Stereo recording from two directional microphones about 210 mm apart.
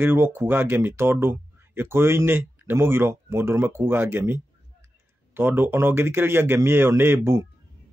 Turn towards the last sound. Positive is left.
turn(degrees=-10)  # may be behind; listen again after turning